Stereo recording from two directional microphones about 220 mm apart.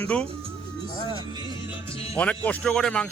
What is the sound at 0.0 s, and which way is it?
Speech, 5° left (ahead or behind).